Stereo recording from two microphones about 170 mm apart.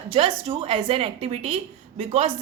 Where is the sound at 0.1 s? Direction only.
30° right (ahead or behind).